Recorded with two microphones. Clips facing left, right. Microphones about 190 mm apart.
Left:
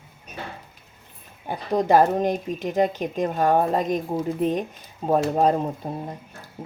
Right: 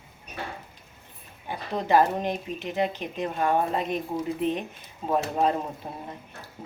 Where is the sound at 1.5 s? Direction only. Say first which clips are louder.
Left 5 dB; 45° left (ahead or behind).